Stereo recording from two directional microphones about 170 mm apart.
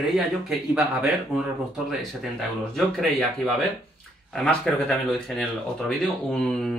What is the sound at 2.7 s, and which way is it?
Speech, centre (ahead or behind).